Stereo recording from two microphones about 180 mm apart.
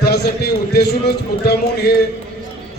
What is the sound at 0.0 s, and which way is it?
A man's voice, 65° left (ahead or behind).